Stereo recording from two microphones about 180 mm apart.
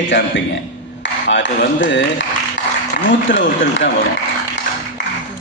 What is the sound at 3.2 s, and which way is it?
Speech, 90° left.